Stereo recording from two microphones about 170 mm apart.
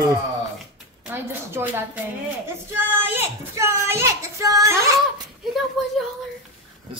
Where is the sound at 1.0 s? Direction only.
15° right (ahead or behind).